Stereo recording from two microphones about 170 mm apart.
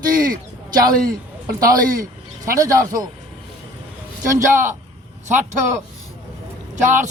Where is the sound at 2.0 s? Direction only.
20° right (ahead or behind).